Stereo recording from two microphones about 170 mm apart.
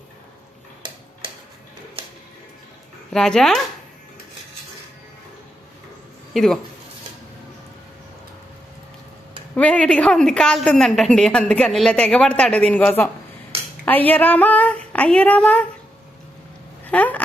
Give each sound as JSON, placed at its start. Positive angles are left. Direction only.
{"t": 0.8, "sound": "tick-tock", "side_deg": -30}
{"t": 3.1, "sound": "a woman's voice", "side_deg": 5}
{"t": 6.3, "sound": "speech", "side_deg": 0}
{"t": 9.6, "sound": "a woman's voice", "side_deg": 5}
{"t": 16.8, "sound": "a sound", "side_deg": 10}